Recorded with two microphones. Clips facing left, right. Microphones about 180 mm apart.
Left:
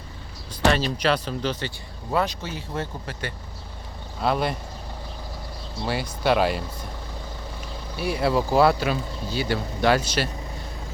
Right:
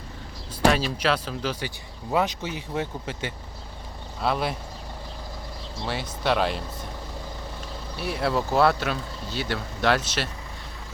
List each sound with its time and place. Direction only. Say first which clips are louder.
0.6 s speech: even; centre (ahead or behind); by 3.3 s 20° right (ahead or behind)
4.2 s speech: left 2 dB; centre (ahead or behind)
5.8 s speech: left 3 dB; centre (ahead or behind)
7.9 s speech: left 3 dB; centre (ahead or behind)